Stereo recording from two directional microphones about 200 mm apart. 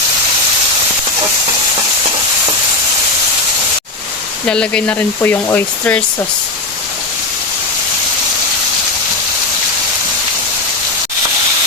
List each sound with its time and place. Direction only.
4.4 s speech: 5° left (ahead or behind)